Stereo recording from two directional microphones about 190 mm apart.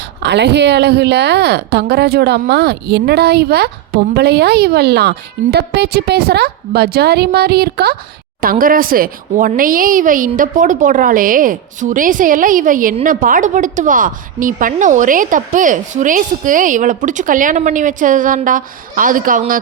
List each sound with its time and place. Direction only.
0.0 s speech: 65° right (ahead or behind); by 19.5 s 45° right (ahead or behind)